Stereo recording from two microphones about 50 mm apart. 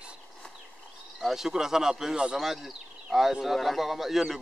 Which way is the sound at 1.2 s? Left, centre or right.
Centre.